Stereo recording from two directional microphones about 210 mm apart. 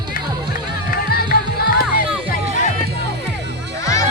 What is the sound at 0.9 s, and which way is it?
Music, 45° left (ahead or behind).